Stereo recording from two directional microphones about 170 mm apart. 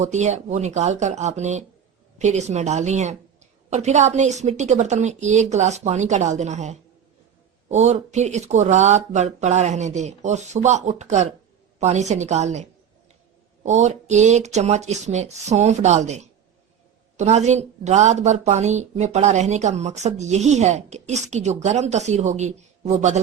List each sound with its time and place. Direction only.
0.0 s a woman's voice: 45° right (ahead or behind)